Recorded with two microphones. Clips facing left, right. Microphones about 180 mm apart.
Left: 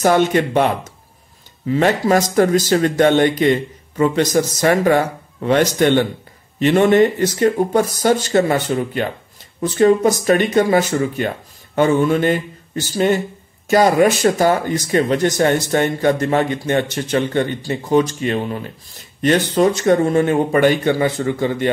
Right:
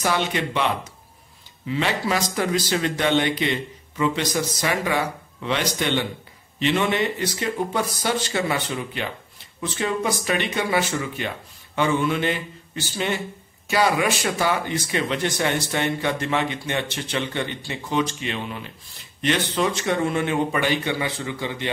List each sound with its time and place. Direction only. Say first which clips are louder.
0.0 s speech: left 9 dB; 50° left (ahead or behind)